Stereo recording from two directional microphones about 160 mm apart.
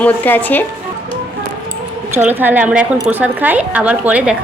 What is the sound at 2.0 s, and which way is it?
A woman's voice, 15° right (ahead or behind).